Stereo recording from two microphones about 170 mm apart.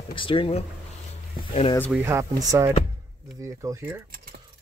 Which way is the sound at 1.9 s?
15° right (ahead or behind).